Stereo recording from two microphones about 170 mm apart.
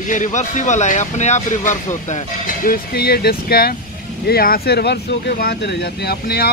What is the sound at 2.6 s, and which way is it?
Speech, 60° left (ahead or behind).